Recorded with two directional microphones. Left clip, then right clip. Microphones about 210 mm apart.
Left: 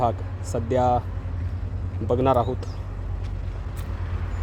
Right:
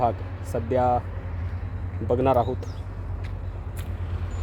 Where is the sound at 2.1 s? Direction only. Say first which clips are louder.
Even; centre (ahead or behind).